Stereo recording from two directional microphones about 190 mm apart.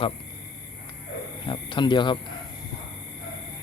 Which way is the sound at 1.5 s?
25° left (ahead or behind).